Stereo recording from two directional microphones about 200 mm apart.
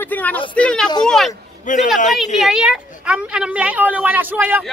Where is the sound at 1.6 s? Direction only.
40° left (ahead or behind).